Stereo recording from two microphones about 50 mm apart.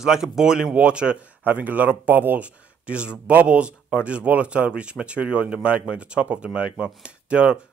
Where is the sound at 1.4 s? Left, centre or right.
Right.